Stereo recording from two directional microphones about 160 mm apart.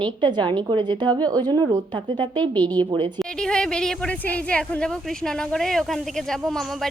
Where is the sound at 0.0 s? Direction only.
30° right (ahead or behind).